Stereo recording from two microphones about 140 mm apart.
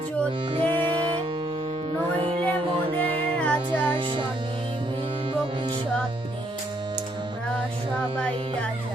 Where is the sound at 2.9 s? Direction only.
10° left (ahead or behind).